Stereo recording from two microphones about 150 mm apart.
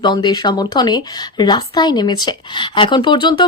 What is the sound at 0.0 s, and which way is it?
A woman's voice, 30° left (ahead or behind).